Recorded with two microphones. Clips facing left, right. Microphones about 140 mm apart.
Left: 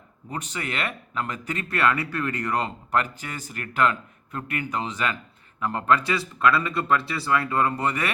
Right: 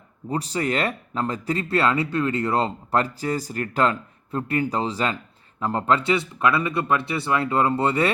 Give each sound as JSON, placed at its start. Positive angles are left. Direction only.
{"t": 0.3, "sound": "speech", "side_deg": -35}